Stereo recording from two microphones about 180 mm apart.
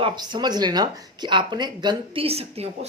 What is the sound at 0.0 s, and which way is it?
Speech, 25° right (ahead or behind).